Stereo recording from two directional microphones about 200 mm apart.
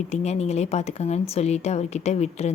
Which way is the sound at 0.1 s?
35° left (ahead or behind).